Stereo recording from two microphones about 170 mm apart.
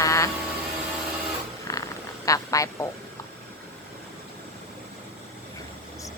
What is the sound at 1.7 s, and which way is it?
Purr, 15° left (ahead or behind).